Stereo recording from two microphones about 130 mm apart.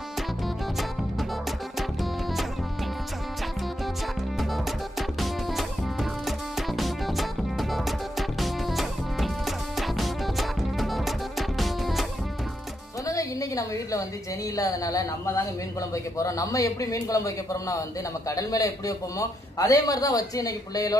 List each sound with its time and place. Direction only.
5.2 s music: centre (ahead or behind)
13.0 s a sound: 25° left (ahead or behind)
14.5 s a man's voice: 25° left (ahead or behind)